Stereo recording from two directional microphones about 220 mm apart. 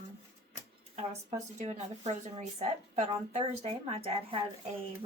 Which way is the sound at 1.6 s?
30° right (ahead or behind).